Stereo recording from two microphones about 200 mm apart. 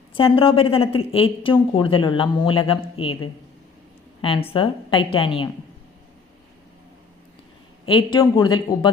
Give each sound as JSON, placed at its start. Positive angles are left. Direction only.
{"t": 0.1, "sound": "speech", "side_deg": 25}
{"t": 4.2, "sound": "speech", "side_deg": 25}
{"t": 7.9, "sound": "speech", "side_deg": 25}